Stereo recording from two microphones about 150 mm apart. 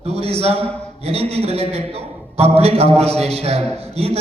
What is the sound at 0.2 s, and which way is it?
A man's voice, 45° right (ahead or behind).